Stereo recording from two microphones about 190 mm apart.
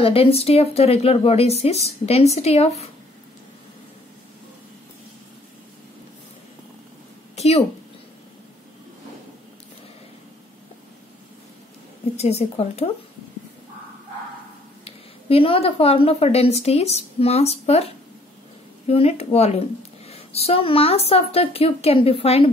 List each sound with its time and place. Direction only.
0.0 s a woman's voice: 30° left (ahead or behind)
7.3 s a sound: 35° left (ahead or behind)
12.2 s a woman's voice: 35° left (ahead or behind)
14.9 s a woman's voice: 30° left (ahead or behind)